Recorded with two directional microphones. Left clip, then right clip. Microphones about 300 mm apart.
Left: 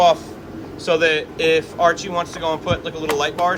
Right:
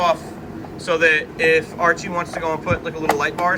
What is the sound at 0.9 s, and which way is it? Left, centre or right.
Speech, centre.